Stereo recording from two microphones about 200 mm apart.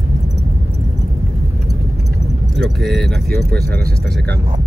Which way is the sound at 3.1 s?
55° right (ahead or behind).